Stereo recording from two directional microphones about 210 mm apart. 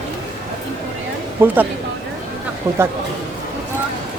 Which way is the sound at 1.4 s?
10° right (ahead or behind).